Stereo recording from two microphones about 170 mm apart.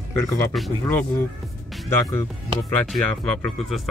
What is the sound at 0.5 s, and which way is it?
Speech, 5° left (ahead or behind).